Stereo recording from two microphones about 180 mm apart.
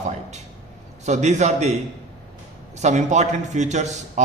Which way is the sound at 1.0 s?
40° right (ahead or behind).